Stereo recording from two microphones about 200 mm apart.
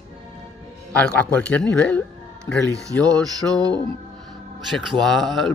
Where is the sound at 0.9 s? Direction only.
5° left (ahead or behind).